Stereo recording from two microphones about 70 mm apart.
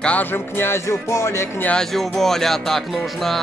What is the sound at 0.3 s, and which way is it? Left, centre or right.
Music, left.